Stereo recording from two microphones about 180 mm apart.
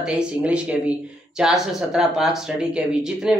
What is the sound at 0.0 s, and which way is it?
Speech, 5° right (ahead or behind).